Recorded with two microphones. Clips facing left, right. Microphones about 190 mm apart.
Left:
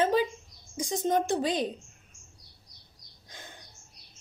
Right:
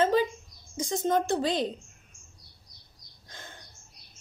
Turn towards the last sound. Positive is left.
turn(degrees=15)  # may be behind; listen again after turning